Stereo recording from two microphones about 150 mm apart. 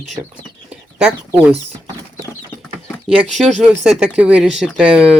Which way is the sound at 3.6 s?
5° right (ahead or behind).